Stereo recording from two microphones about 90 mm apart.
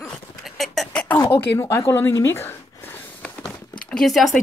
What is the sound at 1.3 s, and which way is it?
Speech, 30° left (ahead or behind).